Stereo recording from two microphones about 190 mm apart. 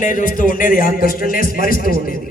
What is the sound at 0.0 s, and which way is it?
A man's voice, 45° left (ahead or behind).